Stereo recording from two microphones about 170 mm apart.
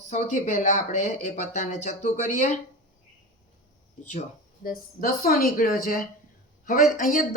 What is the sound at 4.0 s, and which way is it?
Speech, 45° left (ahead or behind).